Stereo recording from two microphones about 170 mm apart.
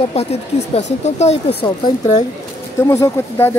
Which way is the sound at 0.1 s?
40° left (ahead or behind).